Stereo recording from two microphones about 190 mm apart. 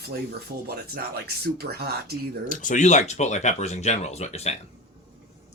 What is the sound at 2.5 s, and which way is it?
Speech, 45° left (ahead or behind).